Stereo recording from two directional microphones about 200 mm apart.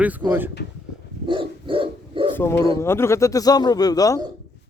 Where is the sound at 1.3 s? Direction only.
25° right (ahead or behind).